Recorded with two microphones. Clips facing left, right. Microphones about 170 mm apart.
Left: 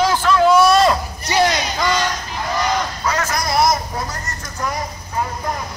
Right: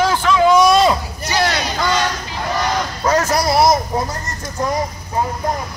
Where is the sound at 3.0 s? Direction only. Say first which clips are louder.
Right 5 dB; 40° right (ahead or behind).